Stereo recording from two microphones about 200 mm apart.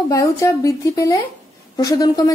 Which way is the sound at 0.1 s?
15° left (ahead or behind).